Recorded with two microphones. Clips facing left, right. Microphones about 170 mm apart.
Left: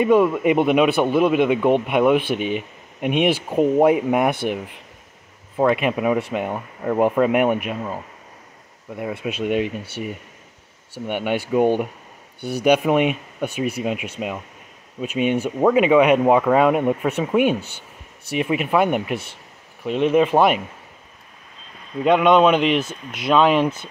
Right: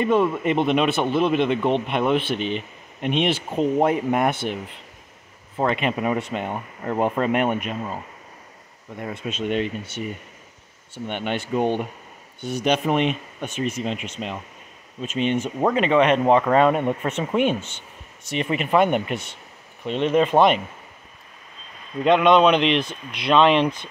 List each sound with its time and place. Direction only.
0.0 s speech: 10° left (ahead or behind)
5.6 s speech: 5° left (ahead or behind)
12.4 s speech: 35° left (ahead or behind)
12.6 s speech: 10° left (ahead or behind)
22.0 s speech: 5° left (ahead or behind)